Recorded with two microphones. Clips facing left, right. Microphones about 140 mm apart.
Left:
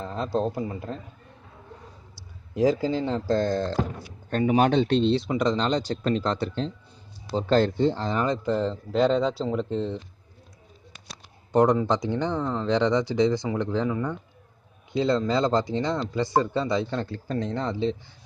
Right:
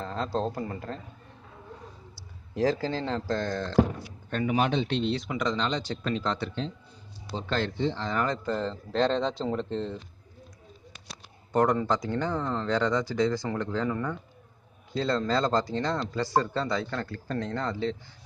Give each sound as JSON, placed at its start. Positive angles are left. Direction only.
{"t": 0.0, "sound": "speech", "side_deg": 15}
{"t": 2.5, "sound": "speech", "side_deg": 15}
{"t": 3.3, "sound": "speech", "side_deg": 35}
{"t": 4.6, "sound": "speech", "side_deg": 50}
{"t": 4.9, "sound": "speech", "side_deg": 30}
{"t": 8.1, "sound": "speech", "side_deg": 20}
{"t": 8.5, "sound": "speech", "side_deg": 5}
{"t": 11.5, "sound": "speech", "side_deg": 20}
{"t": 13.8, "sound": "speech", "side_deg": 5}